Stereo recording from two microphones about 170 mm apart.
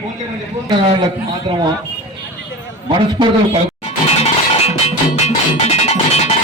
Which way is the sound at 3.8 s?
35° left (ahead or behind).